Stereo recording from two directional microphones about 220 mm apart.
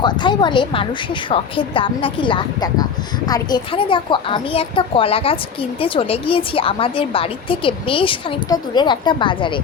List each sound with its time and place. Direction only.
0.0 s a woman's voice: 20° left (ahead or behind)